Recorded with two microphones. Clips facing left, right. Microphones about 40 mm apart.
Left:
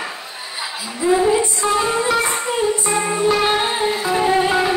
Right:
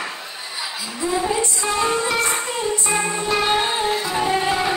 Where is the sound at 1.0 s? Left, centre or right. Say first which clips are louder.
Left 7 dB; centre.